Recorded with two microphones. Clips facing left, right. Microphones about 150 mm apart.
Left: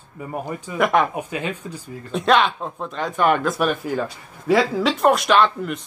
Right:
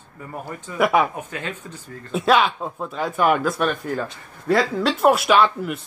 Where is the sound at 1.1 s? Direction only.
15° left (ahead or behind).